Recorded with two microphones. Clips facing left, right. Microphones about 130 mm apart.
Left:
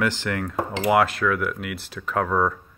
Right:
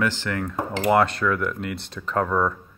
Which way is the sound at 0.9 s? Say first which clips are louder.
Even; 5° left (ahead or behind).